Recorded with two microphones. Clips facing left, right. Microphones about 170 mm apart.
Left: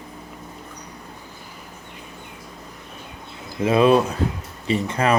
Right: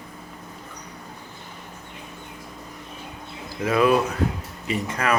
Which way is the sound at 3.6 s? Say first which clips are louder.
Left 3 dB; 25° left (ahead or behind).